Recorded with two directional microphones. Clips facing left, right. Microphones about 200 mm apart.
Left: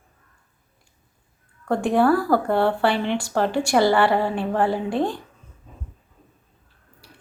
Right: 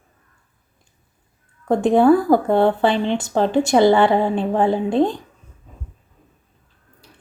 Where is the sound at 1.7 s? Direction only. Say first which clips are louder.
Right 5 dB; 20° right (ahead or behind).